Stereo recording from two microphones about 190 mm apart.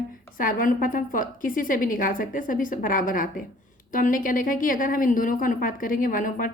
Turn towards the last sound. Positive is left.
turn(degrees=45)  # may be behind; listen again after turning